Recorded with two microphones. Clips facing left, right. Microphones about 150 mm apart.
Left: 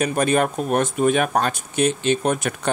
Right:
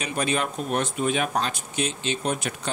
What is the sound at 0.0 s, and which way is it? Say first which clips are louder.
Speech: left 7 dB; 50° left (ahead or behind).